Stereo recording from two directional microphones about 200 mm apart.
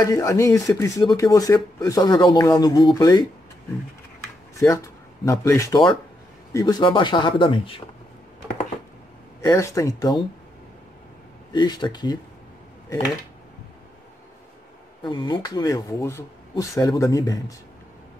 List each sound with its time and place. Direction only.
0.0 s speech: 15° left (ahead or behind)
4.6 s speech: 15° left (ahead or behind)
9.4 s speech: 15° left (ahead or behind)
11.5 s speech: 20° left (ahead or behind)
15.0 s speech: 20° left (ahead or behind)